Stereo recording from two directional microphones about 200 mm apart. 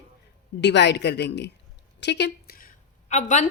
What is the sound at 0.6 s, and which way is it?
A woman's voice, 60° left (ahead or behind).